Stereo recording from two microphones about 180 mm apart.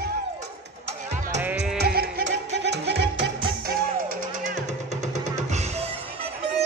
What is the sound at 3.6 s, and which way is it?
Music, 50° right (ahead or behind).